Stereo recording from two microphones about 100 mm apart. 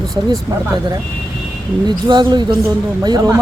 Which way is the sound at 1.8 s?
45° right (ahead or behind).